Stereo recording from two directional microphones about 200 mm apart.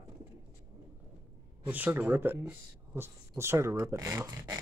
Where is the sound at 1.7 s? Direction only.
10° right (ahead or behind).